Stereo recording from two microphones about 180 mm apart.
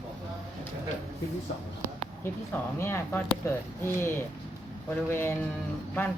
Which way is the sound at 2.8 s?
15° left (ahead or behind).